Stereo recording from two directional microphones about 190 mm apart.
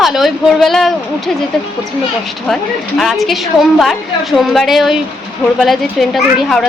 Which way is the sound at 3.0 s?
Centre (ahead or behind).